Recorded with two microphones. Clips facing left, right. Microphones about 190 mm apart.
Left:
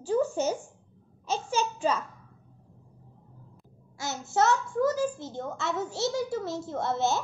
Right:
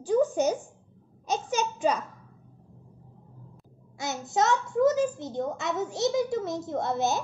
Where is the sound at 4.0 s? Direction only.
20° right (ahead or behind).